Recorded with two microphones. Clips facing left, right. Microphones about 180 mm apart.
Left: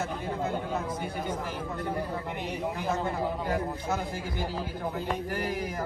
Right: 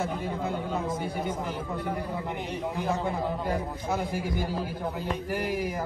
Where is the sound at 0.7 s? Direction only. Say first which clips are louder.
Right 2 dB; 25° right (ahead or behind).